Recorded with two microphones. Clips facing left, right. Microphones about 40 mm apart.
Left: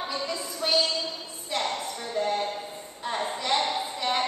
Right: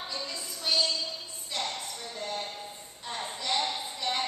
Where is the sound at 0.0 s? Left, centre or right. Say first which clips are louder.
Left 6 dB; centre.